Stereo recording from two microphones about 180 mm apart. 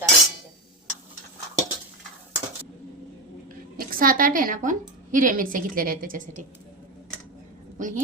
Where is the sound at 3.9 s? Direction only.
50° right (ahead or behind).